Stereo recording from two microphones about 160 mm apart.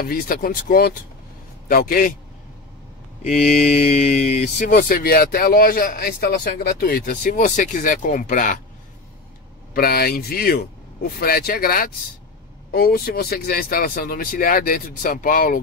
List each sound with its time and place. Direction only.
0.0 s speech: 70° left (ahead or behind)
3.3 s speech: 45° left (ahead or behind)
9.8 s speech: 70° left (ahead or behind)